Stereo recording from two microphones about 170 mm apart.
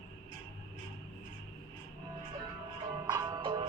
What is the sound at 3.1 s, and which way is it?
Music, 25° right (ahead or behind).